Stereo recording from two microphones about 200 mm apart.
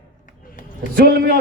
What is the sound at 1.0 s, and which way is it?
Speech, 50° right (ahead or behind).